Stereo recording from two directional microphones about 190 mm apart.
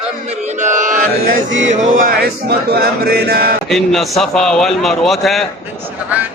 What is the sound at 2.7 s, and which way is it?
Chant, 55° right (ahead or behind).